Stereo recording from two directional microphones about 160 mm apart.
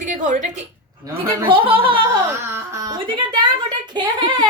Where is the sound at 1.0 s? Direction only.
20° right (ahead or behind).